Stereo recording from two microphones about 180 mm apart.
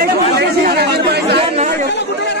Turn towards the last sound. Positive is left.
turn(degrees=-40)  # may be behind; listen again after turning